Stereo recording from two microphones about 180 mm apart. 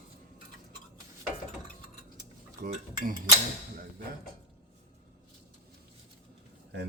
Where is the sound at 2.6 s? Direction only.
55° right (ahead or behind).